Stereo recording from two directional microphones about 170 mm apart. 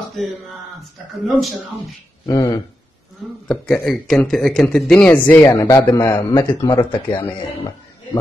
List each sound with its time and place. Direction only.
1.2 s speech: centre (ahead or behind)
2.2 s speech: 25° left (ahead or behind)
3.4 s speech: 5° left (ahead or behind); by 7.3 s 30° left (ahead or behind)